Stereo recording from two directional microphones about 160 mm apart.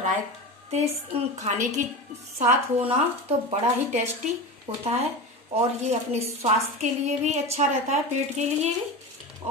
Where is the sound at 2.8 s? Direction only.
40° right (ahead or behind).